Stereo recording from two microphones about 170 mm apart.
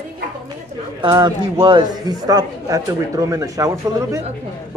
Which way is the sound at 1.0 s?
25° right (ahead or behind).